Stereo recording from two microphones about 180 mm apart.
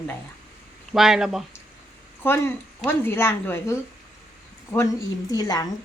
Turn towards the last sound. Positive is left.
turn(degrees=20)  # may be behind; listen again after turning